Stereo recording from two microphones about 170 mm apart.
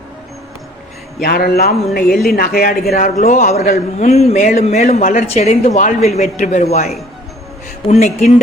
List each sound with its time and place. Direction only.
1.2 s speech: 60° left (ahead or behind)
2.9 s a man's voice: 45° left (ahead or behind)
3.9 s a man's voice: 40° left (ahead or behind)